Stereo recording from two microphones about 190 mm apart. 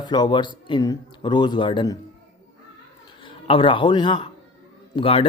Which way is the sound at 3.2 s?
25° left (ahead or behind).